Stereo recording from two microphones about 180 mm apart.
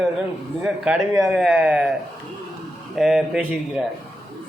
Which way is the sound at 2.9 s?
Centre (ahead or behind).